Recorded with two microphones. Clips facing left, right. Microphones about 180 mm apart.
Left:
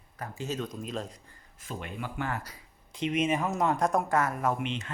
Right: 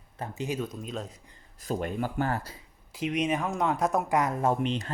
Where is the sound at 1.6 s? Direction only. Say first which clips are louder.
Right 8 dB; 40° right (ahead or behind).